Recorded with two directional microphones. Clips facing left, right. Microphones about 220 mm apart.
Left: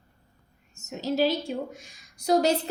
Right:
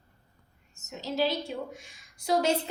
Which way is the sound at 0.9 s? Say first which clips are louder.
Left 4 dB; 45° left (ahead or behind).